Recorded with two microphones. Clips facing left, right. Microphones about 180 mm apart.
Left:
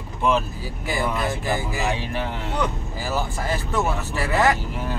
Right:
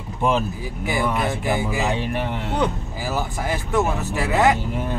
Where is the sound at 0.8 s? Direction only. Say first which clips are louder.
Right 2 dB; 20° right (ahead or behind).